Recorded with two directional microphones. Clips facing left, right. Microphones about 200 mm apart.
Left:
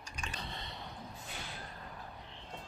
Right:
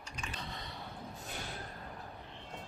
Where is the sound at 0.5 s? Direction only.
25° left (ahead or behind).